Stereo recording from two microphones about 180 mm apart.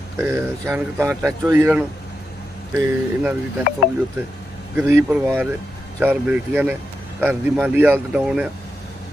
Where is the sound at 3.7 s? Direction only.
45° left (ahead or behind).